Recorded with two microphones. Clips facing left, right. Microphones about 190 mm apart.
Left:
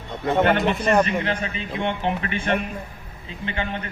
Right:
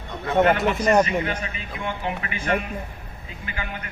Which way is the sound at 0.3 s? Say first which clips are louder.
Right 1 dB; centre (ahead or behind).